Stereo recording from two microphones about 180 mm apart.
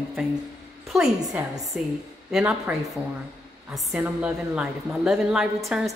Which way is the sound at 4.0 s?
5° right (ahead or behind).